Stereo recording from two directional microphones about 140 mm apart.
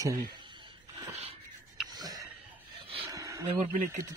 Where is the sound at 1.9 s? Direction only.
30° right (ahead or behind).